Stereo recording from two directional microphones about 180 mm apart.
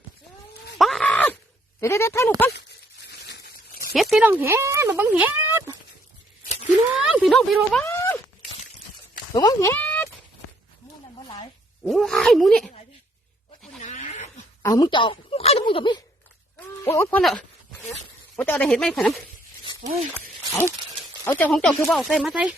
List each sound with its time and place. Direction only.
0.8 s groan: centre (ahead or behind)
1.8 s speech: 15° left (ahead or behind)
2.5 s a sound: 70° left (ahead or behind)
3.9 s speech: centre (ahead or behind)
4.3 s speech: 10° right (ahead or behind)
6.4 s a sound: 40° left (ahead or behind)
7.0 s speech: centre (ahead or behind)
7.9 s a sound: 15° left (ahead or behind)
9.3 s speech: 20° left (ahead or behind)
11.9 s speech: centre (ahead or behind)
13.8 s wild animals: 45° left (ahead or behind)
14.6 s a woman's voice: 20° left (ahead or behind)
16.6 s speech: 15° left (ahead or behind)
21.2 s speech: 10° left (ahead or behind)